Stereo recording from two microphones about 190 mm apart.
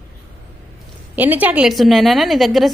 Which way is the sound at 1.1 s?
10° right (ahead or behind).